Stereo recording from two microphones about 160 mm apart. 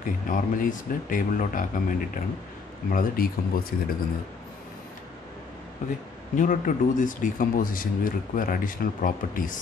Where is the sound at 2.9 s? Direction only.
65° left (ahead or behind).